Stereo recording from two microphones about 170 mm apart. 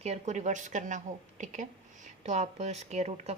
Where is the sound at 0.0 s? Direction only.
40° right (ahead or behind).